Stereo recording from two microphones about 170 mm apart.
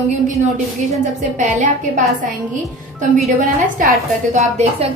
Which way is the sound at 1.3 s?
45° right (ahead or behind).